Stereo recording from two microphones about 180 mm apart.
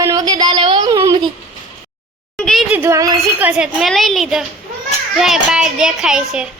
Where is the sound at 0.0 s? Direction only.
20° right (ahead or behind).